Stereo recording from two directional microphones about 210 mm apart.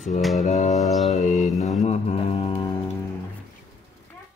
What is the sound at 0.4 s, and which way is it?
Mantra, 35° left (ahead or behind).